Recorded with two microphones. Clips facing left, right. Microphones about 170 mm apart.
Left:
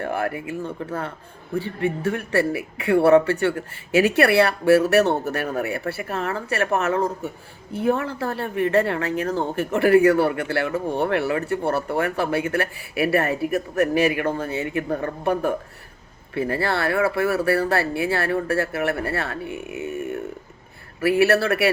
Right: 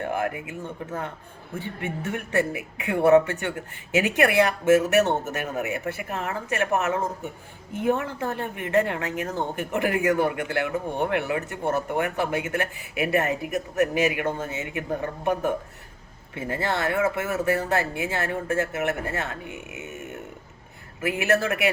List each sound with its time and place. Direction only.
0.0 s speech: 20° right (ahead or behind)